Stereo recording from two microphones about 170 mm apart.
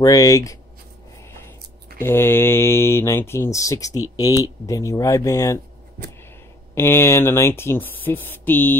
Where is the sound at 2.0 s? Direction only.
15° left (ahead or behind).